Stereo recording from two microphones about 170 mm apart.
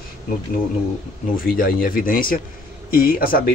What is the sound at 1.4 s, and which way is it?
Speech, 55° left (ahead or behind).